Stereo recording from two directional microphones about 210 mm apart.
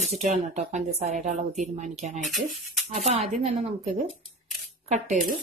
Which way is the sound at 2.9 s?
35° right (ahead or behind).